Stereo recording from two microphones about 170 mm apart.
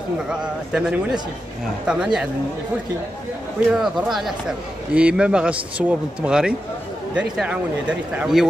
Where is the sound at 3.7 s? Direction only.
Centre (ahead or behind).